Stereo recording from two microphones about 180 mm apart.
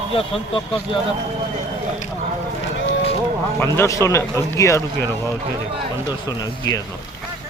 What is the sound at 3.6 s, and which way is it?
Speech, 15° left (ahead or behind).